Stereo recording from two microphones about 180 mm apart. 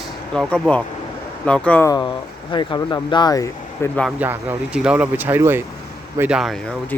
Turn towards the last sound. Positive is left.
turn(degrees=0)  # may be behind; listen again after turning